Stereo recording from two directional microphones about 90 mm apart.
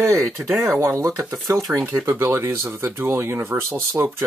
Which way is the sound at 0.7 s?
30° right (ahead or behind).